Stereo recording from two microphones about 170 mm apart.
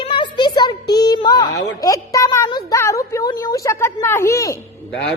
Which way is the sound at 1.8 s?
20° left (ahead or behind).